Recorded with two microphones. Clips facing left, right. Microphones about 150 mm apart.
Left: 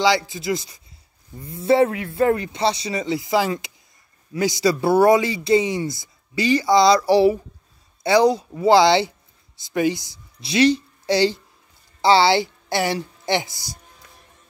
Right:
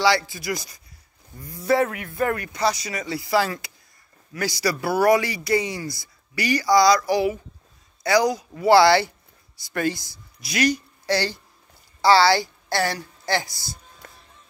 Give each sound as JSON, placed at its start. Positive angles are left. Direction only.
{"t": 0.0, "sound": "a woman's voice", "side_deg": 20}
{"t": 14.0, "sound": "music", "side_deg": -50}